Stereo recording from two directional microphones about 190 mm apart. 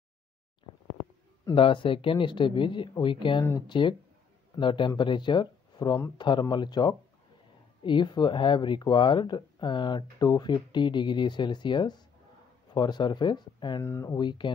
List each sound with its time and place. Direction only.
1.5 s speech: 25° left (ahead or behind)